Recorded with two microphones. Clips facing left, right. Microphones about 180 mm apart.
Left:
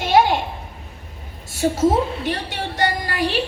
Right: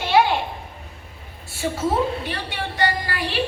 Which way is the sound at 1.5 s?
40° left (ahead or behind).